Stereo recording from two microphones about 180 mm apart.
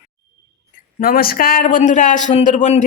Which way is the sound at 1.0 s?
55° left (ahead or behind).